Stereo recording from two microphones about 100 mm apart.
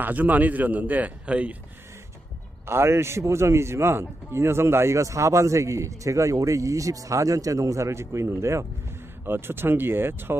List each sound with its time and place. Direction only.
0.0 s a man's voice: 15° right (ahead or behind)
2.6 s a man's voice: 25° right (ahead or behind)